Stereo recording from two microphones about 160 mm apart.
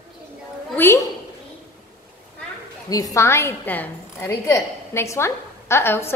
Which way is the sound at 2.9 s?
20° left (ahead or behind).